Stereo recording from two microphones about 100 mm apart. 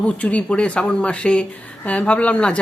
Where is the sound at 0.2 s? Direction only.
15° left (ahead or behind).